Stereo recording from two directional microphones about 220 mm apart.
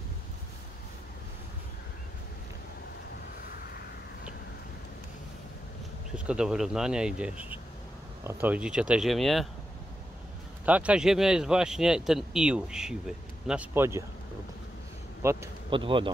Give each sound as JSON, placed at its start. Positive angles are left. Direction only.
{"t": 6.1, "sound": "speech", "side_deg": -5}
{"t": 10.6, "sound": "speech", "side_deg": -5}
{"t": 15.2, "sound": "speech", "side_deg": -10}
{"t": 15.7, "sound": "speech", "side_deg": -20}